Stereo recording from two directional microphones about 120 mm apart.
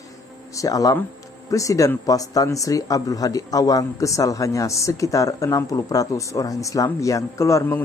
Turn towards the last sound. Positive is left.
turn(degrees=20)  # may be behind; listen again after turning